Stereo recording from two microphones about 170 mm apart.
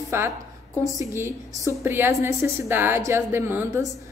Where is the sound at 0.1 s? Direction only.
15° right (ahead or behind).